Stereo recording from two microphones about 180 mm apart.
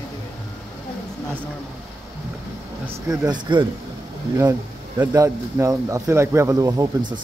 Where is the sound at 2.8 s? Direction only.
20° right (ahead or behind).